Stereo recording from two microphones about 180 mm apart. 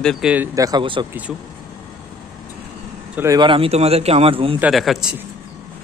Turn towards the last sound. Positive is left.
turn(degrees=0)  # may be behind; listen again after turning